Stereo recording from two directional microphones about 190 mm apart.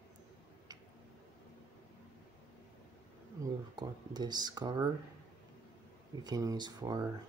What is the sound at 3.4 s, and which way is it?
Speech, 20° right (ahead or behind).